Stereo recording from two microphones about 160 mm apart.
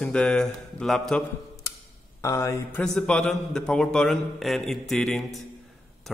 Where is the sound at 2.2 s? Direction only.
20° left (ahead or behind).